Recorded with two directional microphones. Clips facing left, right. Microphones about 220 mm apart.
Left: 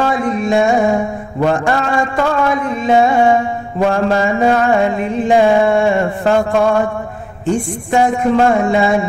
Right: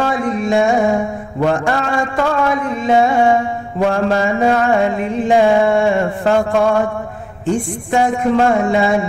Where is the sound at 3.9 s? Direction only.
20° left (ahead or behind).